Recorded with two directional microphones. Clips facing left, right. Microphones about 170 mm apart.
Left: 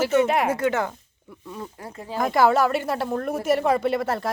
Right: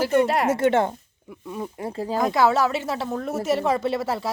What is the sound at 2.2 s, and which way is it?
Speech, centre (ahead or behind).